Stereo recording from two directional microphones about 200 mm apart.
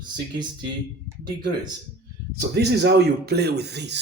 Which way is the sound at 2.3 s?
55° right (ahead or behind).